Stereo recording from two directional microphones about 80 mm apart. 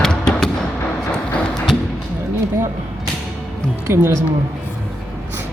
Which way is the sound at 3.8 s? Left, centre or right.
Right.